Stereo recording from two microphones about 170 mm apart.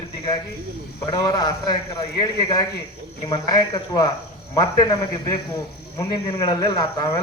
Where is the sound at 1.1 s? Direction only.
25° left (ahead or behind).